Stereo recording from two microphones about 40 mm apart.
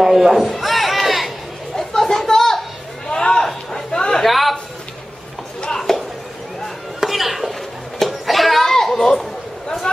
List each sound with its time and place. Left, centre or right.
0.0 s speech: centre
0.5 s crowd: centre
1.8 s a sound: centre
3.4 s chatter: centre
4.2 s a sound: centre
5.6 s clip-clop: centre
7.0 s chopping: centre
8.0 s children playing: centre